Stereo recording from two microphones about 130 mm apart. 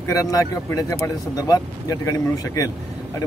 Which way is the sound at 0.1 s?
25° left (ahead or behind).